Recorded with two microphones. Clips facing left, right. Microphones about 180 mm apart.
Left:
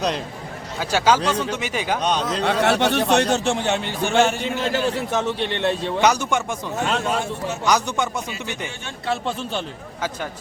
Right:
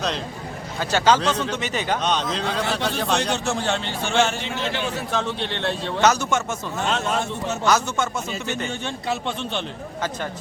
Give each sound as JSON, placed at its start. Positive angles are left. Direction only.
{"t": 0.8, "sound": "a man's voice", "side_deg": 10}
{"t": 2.4, "sound": "a man's voice", "side_deg": 70}
{"t": 3.4, "sound": "a man's voice", "side_deg": 30}
{"t": 3.7, "sound": "a man's voice", "side_deg": 15}
{"t": 4.4, "sound": "a man's voice", "side_deg": 45}
{"t": 5.1, "sound": "a man's voice", "side_deg": 15}
{"t": 7.6, "sound": "a man's voice", "side_deg": 15}